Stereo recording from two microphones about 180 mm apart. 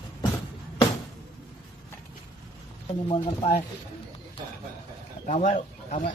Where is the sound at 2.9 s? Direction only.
30° left (ahead or behind).